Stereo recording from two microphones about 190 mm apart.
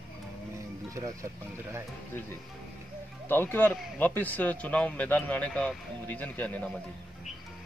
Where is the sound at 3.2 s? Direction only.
10° left (ahead or behind).